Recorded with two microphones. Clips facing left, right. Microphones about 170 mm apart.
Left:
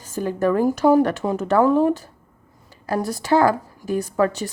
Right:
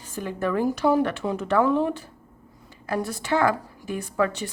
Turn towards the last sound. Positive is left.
turn(degrees=40)  # may be behind; listen again after turning